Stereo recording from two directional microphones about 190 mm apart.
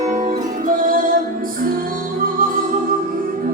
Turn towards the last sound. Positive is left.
turn(degrees=-45)  # may be behind; listen again after turning